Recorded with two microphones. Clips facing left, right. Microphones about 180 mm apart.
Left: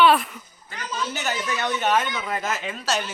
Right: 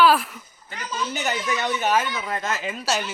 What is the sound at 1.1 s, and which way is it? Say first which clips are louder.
Speech: right 3 dB; 15° right (ahead or behind).